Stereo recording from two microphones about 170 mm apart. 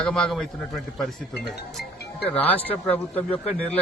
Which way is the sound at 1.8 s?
75° left (ahead or behind).